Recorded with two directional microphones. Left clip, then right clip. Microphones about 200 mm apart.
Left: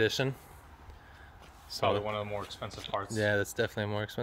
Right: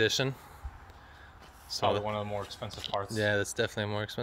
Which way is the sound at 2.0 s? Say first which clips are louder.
Right 1 dB; 50° right (ahead or behind).